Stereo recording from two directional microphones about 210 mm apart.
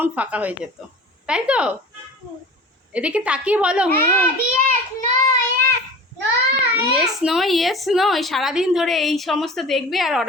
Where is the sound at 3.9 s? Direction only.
10° left (ahead or behind).